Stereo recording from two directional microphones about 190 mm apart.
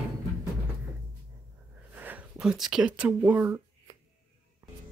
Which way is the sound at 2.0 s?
10° right (ahead or behind).